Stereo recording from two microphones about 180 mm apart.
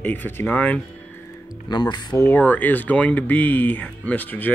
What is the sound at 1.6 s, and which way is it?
Speech, 25° left (ahead or behind).